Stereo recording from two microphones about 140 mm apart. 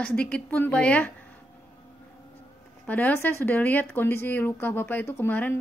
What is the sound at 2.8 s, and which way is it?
A woman's voice, 10° left (ahead or behind).